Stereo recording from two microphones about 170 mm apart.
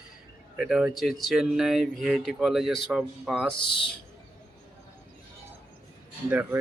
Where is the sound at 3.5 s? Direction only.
30° left (ahead or behind).